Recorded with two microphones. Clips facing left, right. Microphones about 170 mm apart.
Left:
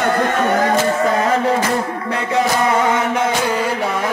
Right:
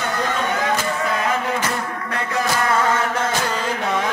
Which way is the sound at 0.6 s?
40° left (ahead or behind).